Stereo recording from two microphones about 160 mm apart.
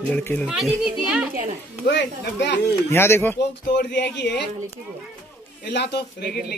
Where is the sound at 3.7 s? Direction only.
90° left.